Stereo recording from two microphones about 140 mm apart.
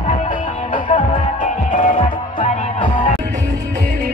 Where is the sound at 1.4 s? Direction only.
70° left (ahead or behind).